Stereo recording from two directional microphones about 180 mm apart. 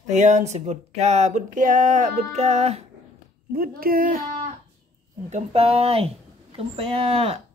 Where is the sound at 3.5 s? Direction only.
55° right (ahead or behind).